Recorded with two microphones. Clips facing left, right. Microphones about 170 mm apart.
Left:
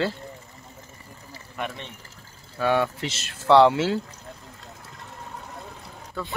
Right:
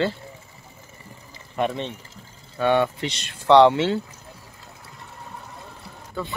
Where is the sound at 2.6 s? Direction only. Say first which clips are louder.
Right 3 dB; centre (ahead or behind).